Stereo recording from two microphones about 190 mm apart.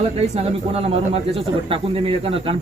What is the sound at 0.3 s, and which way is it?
Speech, 30° right (ahead or behind).